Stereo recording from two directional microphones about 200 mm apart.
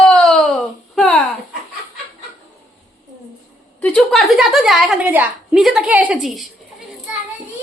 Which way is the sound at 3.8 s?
5° left (ahead or behind).